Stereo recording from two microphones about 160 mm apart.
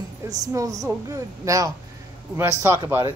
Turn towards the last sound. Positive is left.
turn(degrees=-20)  # may be behind; listen again after turning